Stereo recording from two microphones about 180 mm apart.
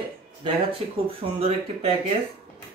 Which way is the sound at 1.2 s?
35° right (ahead or behind).